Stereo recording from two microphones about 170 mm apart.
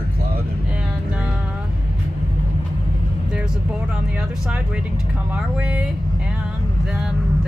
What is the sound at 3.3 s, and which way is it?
Speech, 5° right (ahead or behind).